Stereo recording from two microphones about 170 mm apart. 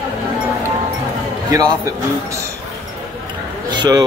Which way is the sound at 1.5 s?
20° right (ahead or behind).